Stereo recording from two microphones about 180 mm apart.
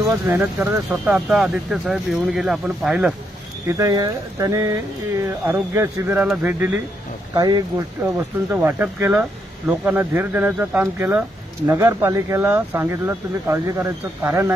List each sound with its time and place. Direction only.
0.3 s speech: 10° right (ahead or behind)
3.6 s speech: 20° right (ahead or behind)
7.3 s speech: 20° right (ahead or behind)